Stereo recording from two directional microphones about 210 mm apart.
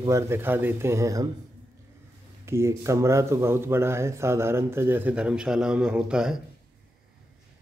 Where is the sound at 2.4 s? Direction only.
10° right (ahead or behind).